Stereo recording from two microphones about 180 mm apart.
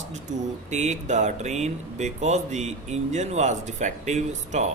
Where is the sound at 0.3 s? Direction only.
40° right (ahead or behind).